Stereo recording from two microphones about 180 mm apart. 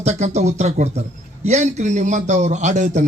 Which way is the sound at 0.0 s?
40° right (ahead or behind).